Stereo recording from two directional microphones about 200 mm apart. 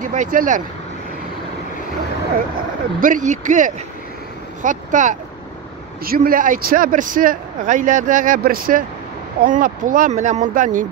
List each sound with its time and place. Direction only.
0.0 s speech: 40° right (ahead or behind)
3.0 s speech: 40° right (ahead or behind)